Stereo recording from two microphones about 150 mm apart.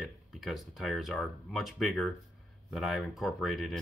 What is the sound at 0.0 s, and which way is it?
Speech, centre (ahead or behind).